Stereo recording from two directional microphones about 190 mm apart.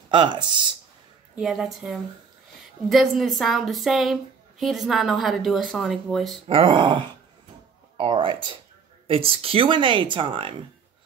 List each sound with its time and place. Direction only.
0.1 s speech: 25° right (ahead or behind)
1.4 s a woman's voice: centre (ahead or behind)
6.4 s speech: 30° right (ahead or behind)